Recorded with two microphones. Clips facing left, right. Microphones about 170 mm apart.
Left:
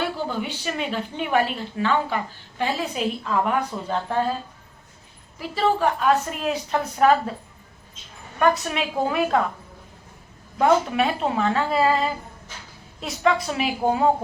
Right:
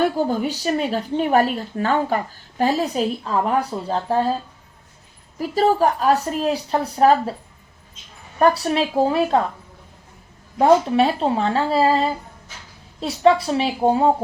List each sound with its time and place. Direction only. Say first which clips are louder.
0.0 s a woman's voice: right 7 dB; 40° right (ahead or behind)
5.4 s a woman's voice: right 4 dB; 40° right (ahead or behind)
8.4 s a woman's voice: right 4 dB; 35° right (ahead or behind)
10.6 s a woman's voice: right 4 dB; 30° right (ahead or behind)